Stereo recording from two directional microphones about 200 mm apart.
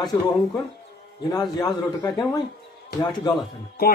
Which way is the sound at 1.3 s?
20° left (ahead or behind).